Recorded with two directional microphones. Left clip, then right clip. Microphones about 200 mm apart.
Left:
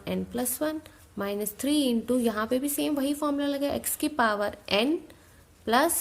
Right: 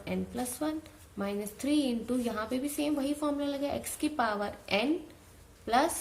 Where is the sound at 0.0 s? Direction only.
50° left (ahead or behind).